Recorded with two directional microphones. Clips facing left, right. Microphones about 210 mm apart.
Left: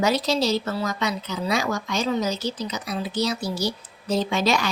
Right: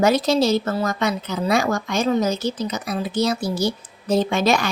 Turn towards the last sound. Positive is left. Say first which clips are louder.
# right 4 dB
turn(degrees=-50)  # may be behind; listen again after turning